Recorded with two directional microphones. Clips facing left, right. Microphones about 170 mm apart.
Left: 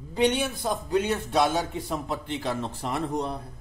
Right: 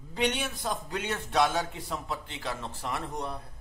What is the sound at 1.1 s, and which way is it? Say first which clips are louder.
Speech: left 3 dB; 15° left (ahead or behind).